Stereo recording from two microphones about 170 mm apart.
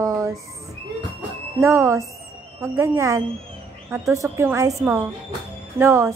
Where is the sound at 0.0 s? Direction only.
20° right (ahead or behind).